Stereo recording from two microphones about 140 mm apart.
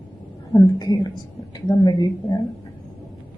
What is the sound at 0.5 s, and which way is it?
A woman's voice, 30° left (ahead or behind).